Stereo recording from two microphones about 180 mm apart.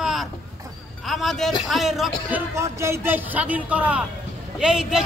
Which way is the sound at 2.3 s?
15° right (ahead or behind).